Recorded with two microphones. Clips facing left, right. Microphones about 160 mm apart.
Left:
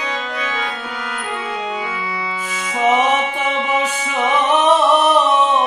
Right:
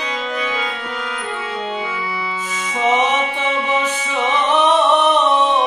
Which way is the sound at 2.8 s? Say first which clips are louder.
Left 2 dB; 45° left (ahead or behind).